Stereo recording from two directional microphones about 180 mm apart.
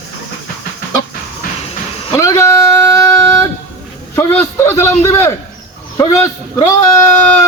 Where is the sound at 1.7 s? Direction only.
30° left (ahead or behind).